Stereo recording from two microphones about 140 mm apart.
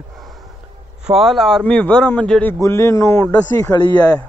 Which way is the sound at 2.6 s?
20° left (ahead or behind).